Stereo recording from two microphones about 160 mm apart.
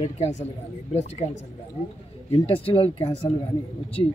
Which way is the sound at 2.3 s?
35° left (ahead or behind).